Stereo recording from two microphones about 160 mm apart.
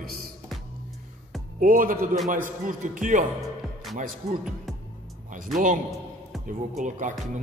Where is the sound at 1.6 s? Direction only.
60° right (ahead or behind).